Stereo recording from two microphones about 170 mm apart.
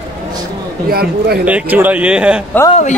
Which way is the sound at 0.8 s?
65° right (ahead or behind).